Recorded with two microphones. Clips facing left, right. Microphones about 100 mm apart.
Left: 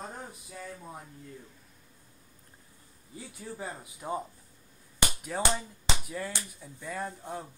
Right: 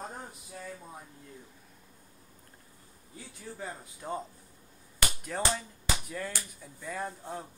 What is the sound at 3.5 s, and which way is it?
Speech, 15° left (ahead or behind).